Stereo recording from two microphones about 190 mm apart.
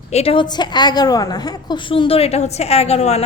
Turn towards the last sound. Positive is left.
turn(degrees=35)  # may be behind; listen again after turning